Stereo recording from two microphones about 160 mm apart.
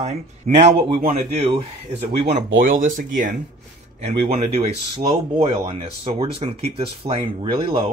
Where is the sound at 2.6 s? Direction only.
55° right (ahead or behind).